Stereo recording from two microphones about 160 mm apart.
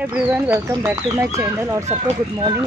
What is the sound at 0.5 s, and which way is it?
Speech, 15° right (ahead or behind).